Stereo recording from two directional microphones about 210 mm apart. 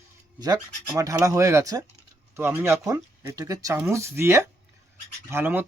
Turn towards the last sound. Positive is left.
turn(degrees=-10)  # may be behind; listen again after turning